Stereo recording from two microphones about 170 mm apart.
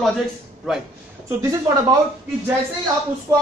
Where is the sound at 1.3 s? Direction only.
20° right (ahead or behind).